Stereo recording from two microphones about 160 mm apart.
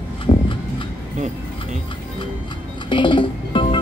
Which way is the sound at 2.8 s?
30° left (ahead or behind).